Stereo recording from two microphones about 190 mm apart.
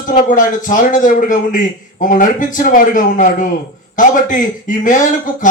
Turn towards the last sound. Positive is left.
turn(degrees=45)  # may be behind; listen again after turning